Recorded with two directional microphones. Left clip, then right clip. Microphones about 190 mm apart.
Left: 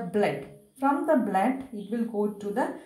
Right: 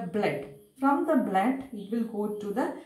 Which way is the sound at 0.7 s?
35° left (ahead or behind).